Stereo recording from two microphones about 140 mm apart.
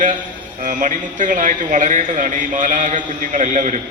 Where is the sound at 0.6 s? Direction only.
70° right (ahead or behind).